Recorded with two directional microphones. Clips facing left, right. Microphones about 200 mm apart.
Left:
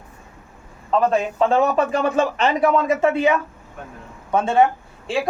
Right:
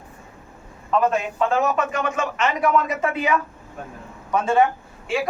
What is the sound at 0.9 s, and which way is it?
A man's voice, 30° left (ahead or behind).